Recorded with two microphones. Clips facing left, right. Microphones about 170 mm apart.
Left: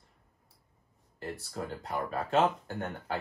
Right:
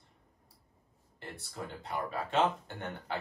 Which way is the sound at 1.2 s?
45° left (ahead or behind).